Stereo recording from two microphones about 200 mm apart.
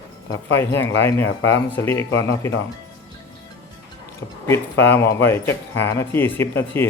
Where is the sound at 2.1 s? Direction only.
90° left.